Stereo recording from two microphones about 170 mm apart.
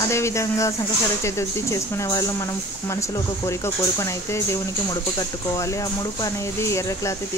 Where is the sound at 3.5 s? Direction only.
15° left (ahead or behind).